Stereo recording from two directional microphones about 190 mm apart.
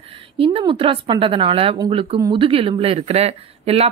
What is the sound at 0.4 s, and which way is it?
Speech, 30° right (ahead or behind).